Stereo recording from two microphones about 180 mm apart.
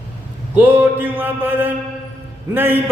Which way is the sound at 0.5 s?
10° right (ahead or behind).